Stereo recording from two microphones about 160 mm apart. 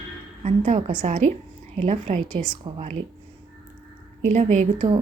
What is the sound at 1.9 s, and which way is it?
A woman's voice, 35° right (ahead or behind).